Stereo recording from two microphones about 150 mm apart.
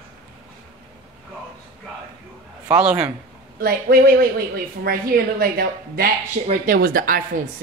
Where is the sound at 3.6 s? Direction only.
75° right (ahead or behind).